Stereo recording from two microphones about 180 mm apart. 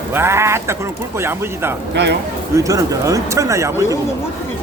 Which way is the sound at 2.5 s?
20° right (ahead or behind).